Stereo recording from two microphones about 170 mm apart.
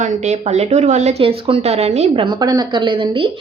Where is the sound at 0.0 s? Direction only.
40° right (ahead or behind).